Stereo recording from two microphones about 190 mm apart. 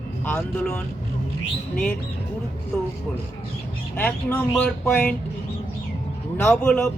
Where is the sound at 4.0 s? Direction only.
10° left (ahead or behind).